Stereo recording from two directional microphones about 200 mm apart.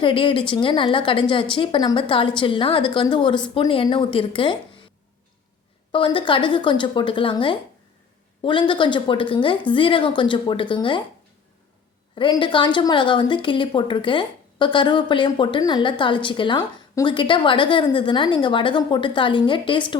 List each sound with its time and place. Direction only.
0.0 s a woman's voice: 25° left (ahead or behind)
5.9 s a woman's voice: 25° left (ahead or behind)
12.1 s a woman's voice: 25° left (ahead or behind)